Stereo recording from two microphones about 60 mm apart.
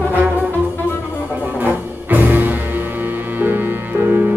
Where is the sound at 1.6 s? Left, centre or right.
Right.